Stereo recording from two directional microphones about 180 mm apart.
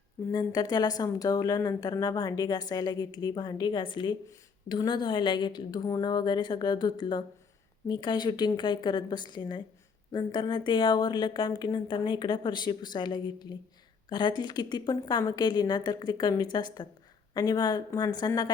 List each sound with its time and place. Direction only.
0.3 s speech: 20° left (ahead or behind)